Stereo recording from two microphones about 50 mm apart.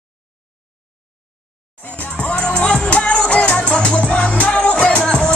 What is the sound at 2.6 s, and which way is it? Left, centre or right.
Music, centre.